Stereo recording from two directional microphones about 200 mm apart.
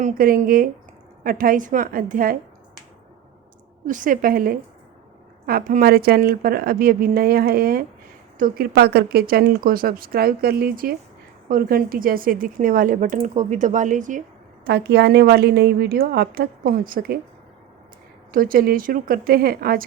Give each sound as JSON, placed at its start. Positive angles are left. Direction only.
{"t": 0.0, "sound": "a woman's voice", "side_deg": -45}
{"t": 3.8, "sound": "a woman's voice", "side_deg": -40}
{"t": 14.6, "sound": "a woman's voice", "side_deg": -55}
{"t": 18.3, "sound": "a woman's voice", "side_deg": -45}